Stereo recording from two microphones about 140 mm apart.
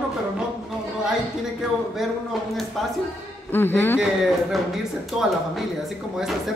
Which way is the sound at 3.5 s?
15° left (ahead or behind).